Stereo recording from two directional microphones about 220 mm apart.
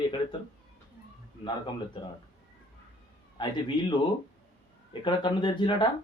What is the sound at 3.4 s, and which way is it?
Speech, 20° left (ahead or behind).